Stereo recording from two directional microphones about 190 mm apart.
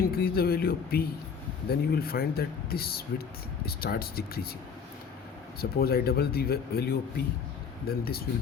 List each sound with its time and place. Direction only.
0.0 s speech: 55° left (ahead or behind)
5.5 s speech: 55° left (ahead or behind)